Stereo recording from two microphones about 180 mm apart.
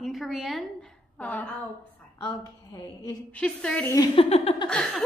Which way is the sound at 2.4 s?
20° left (ahead or behind).